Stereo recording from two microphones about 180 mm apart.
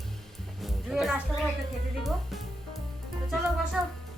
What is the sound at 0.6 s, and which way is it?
Music, centre (ahead or behind).